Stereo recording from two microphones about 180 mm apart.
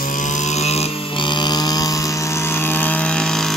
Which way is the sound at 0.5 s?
35° left (ahead or behind).